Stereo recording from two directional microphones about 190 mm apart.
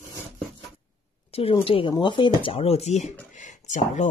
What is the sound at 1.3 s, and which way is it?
Speech, 30° left (ahead or behind).